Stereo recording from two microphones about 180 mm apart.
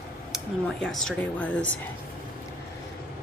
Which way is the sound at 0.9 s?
5° left (ahead or behind).